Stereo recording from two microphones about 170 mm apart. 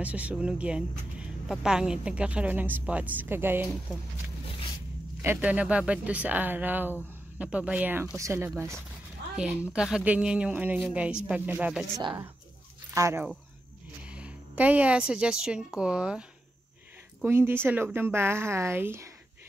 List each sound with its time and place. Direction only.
0.0 s speech: 10° right (ahead or behind)
5.2 s speech: 10° right (ahead or behind)
9.4 s speech: 5° right (ahead or behind)
12.0 s speech: 25° right (ahead or behind)
12.9 s a woman's voice: 15° right (ahead or behind)